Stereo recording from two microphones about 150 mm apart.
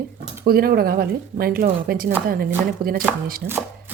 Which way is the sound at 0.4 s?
90° right.